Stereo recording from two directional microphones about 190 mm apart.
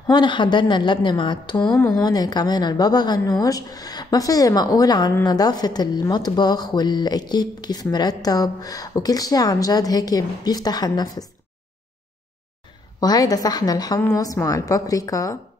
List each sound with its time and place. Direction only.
0.0 s a woman's voice: 25° left (ahead or behind)
1.6 s a woman's voice: 10° left (ahead or behind)
13.0 s a woman's voice: 20° left (ahead or behind)